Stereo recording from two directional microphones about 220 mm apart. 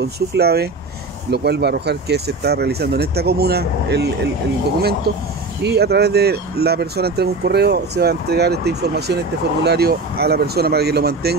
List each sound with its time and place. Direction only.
0.0 s speech: 50° right (ahead or behind)